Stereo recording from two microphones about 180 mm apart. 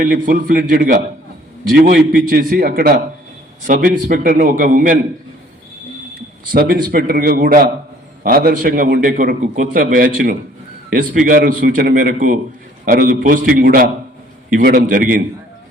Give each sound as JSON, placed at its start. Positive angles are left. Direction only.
{"t": 0.0, "sound": "a man's voice", "side_deg": -50}
{"t": 6.5, "sound": "a man's voice", "side_deg": -55}